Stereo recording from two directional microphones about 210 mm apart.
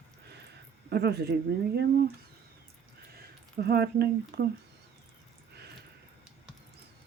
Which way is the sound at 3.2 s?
50° right (ahead or behind).